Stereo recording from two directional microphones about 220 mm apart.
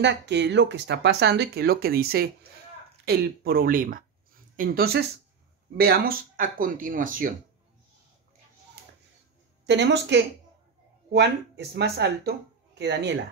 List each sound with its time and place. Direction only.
0.0 s speech: 50° right (ahead or behind)
9.7 s speech: 50° right (ahead or behind)